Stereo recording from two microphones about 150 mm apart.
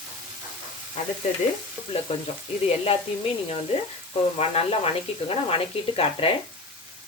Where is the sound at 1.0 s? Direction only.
50° left (ahead or behind).